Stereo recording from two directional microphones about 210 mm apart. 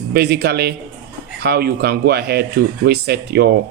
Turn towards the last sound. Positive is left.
turn(degrees=-50)  # may be behind; listen again after turning